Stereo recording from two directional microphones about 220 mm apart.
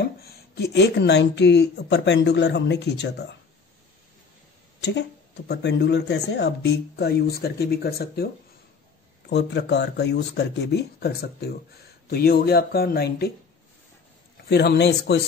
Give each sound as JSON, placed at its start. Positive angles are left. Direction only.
{"t": 0.3, "sound": "speech", "side_deg": 50}
{"t": 5.5, "sound": "speech", "side_deg": 50}
{"t": 9.3, "sound": "speech", "side_deg": 50}
{"t": 14.5, "sound": "speech", "side_deg": 50}